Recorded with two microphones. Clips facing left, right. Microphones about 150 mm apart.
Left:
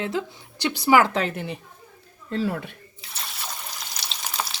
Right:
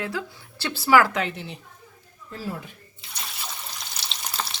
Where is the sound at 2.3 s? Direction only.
65° left (ahead or behind).